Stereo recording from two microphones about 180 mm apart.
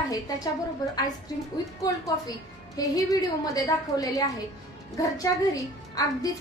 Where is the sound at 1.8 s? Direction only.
20° left (ahead or behind).